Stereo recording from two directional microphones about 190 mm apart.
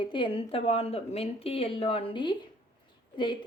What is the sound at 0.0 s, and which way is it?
Speech, 25° left (ahead or behind).